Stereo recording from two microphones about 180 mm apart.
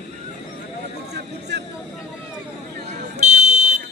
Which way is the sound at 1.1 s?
65° right (ahead or behind).